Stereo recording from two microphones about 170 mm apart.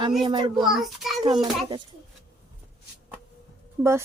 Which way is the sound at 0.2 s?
30° right (ahead or behind).